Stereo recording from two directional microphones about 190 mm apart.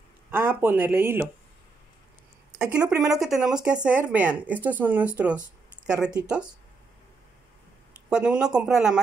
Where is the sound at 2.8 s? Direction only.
20° right (ahead or behind).